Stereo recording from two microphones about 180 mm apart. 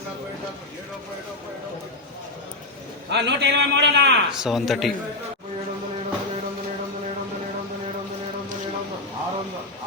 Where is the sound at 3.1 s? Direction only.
70° right (ahead or behind).